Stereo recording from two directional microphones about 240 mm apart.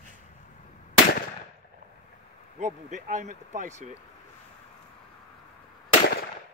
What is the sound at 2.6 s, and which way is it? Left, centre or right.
Speech, right.